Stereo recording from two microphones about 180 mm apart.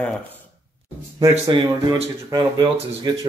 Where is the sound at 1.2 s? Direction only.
25° right (ahead or behind).